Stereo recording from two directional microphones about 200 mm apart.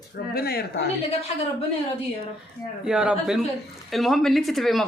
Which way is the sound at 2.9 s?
5° right (ahead or behind).